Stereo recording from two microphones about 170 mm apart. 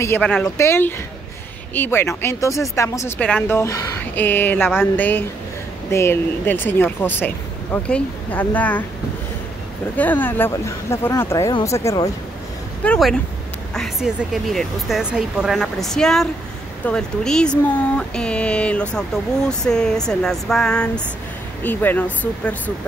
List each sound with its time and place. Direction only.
0.2 s speech: 5° left (ahead or behind)
9.9 s speech: 10° left (ahead or behind)
12.8 s speech: 5° left (ahead or behind)